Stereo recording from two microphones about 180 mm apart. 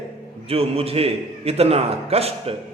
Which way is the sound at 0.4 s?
35° right (ahead or behind).